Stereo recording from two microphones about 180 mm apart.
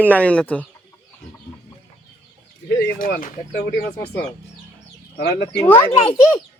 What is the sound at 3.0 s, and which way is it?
Speech, 50° left (ahead or behind).